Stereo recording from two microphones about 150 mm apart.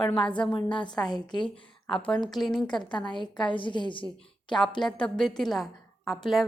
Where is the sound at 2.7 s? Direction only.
30° left (ahead or behind).